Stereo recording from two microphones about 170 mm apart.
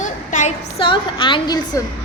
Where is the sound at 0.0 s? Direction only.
45° left (ahead or behind).